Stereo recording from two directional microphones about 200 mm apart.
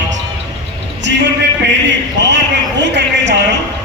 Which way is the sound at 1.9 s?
60° right (ahead or behind).